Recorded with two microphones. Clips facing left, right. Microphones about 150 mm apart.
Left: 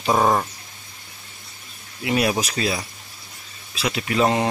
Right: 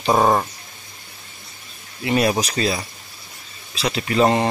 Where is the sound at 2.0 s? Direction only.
5° left (ahead or behind).